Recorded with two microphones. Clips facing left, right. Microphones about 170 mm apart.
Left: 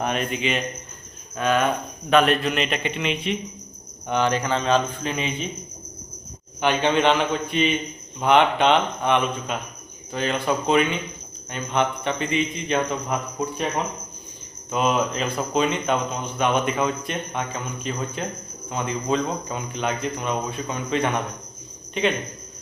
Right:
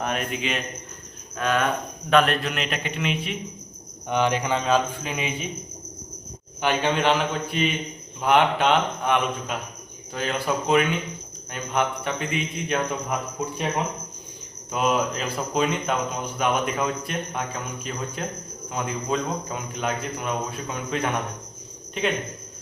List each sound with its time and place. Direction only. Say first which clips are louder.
0.0 s a man's voice: left 3 dB; 5° right (ahead or behind)
4.1 s speech: left 1 dB; 15° right (ahead or behind)
6.6 s speech: left 3 dB; 5° right (ahead or behind)
14.7 s speech: left 1 dB; 5° right (ahead or behind)